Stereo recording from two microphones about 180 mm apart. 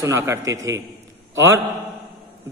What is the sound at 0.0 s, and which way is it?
Speech, 15° right (ahead or behind).